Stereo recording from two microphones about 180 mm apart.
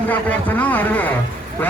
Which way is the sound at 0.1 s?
10° left (ahead or behind).